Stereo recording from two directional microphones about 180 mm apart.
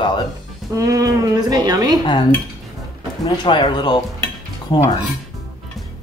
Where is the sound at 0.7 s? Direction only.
20° right (ahead or behind).